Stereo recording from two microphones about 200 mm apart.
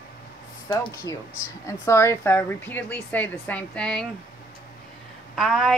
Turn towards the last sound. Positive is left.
turn(degrees=0)  # may be behind; listen again after turning